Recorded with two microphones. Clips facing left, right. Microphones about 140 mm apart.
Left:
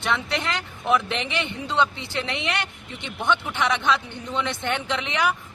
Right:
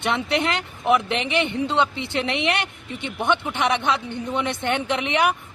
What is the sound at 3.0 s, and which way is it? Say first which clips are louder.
Speech: right 2 dB; 15° right (ahead or behind).